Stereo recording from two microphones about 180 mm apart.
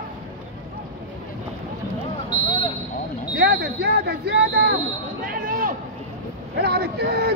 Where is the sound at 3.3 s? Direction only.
65° right (ahead or behind).